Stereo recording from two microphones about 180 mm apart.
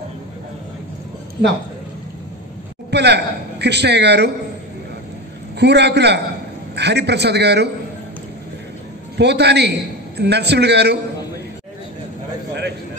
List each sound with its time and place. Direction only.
2.9 s a man's voice: 70° right (ahead or behind)
5.6 s a man's voice: 70° right (ahead or behind)
9.2 s a man's voice: 70° right (ahead or behind)